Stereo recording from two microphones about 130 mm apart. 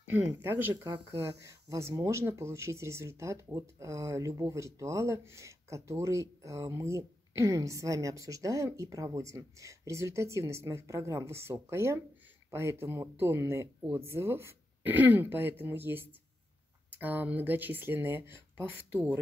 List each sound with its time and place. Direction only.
0.1 s speech: 20° right (ahead or behind)